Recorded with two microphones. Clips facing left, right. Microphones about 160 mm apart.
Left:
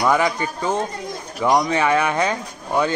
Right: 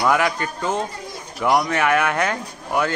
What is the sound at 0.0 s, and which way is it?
Speech, 15° left (ahead or behind).